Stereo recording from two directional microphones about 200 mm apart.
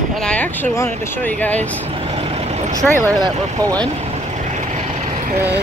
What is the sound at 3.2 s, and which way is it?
Speech, 20° right (ahead or behind).